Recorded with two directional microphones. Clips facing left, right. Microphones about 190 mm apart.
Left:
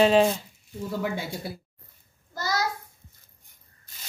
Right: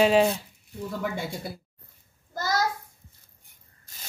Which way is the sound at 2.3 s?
50° right (ahead or behind).